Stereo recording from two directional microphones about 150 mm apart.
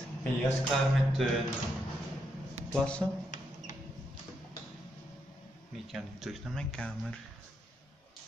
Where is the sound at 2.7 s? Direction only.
5° left (ahead or behind).